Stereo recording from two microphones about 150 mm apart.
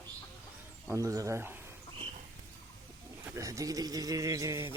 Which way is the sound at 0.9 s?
20° right (ahead or behind).